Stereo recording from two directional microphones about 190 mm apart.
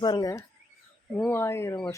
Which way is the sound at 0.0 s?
20° left (ahead or behind).